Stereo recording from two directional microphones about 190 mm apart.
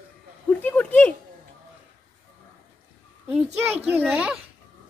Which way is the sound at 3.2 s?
10° right (ahead or behind).